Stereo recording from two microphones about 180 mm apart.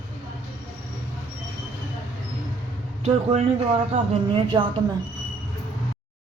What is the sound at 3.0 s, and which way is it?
Speech, 35° right (ahead or behind).